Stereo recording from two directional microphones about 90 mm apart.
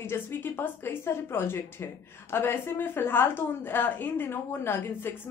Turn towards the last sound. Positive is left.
turn(degrees=25)  # may be behind; listen again after turning